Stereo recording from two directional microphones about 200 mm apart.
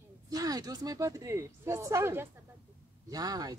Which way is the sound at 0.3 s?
20° right (ahead or behind).